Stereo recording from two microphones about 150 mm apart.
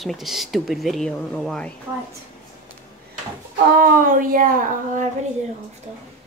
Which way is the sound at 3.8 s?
65° right (ahead or behind).